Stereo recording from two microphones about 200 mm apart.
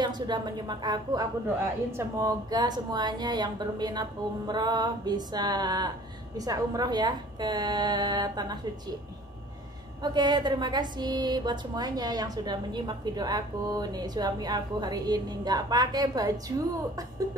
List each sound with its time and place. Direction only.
0.0 s a woman's voice: 20° right (ahead or behind)
10.1 s a woman's voice: 20° right (ahead or behind)